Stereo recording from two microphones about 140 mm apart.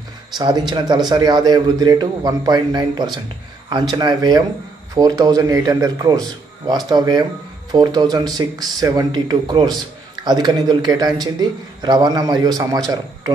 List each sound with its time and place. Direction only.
0.4 s a man's voice: 30° right (ahead or behind)